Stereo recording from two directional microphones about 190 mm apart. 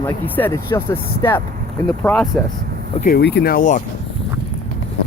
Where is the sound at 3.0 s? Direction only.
55° left (ahead or behind).